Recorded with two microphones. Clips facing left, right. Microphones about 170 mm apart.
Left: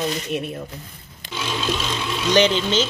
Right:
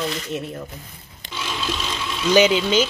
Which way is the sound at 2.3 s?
10° right (ahead or behind).